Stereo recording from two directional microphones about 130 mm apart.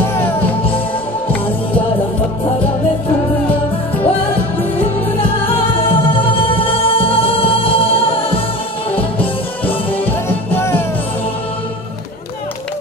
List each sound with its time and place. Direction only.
0.0 s music: 15° left (ahead or behind)
4.0 s music: 45° left (ahead or behind)
6.2 s music: 45° left (ahead or behind)
9.9 s music: 15° left (ahead or behind)